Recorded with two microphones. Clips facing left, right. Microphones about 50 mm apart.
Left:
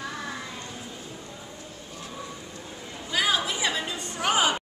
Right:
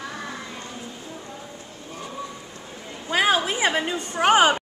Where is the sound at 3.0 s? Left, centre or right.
Right.